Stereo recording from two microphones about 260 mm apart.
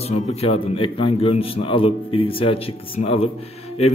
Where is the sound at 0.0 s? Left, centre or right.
Left.